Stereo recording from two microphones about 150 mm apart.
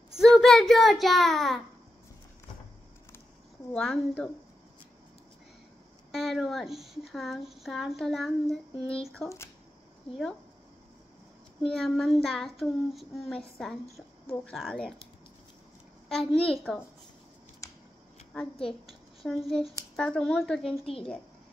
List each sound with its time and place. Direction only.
0.2 s speech: centre (ahead or behind)
3.7 s speech: 5° left (ahead or behind)
6.1 s speech: centre (ahead or behind)
11.6 s speech: centre (ahead or behind)
16.1 s speech: 5° left (ahead or behind)
17.6 s scissors: 20° left (ahead or behind)
18.3 s speech: 5° left (ahead or behind)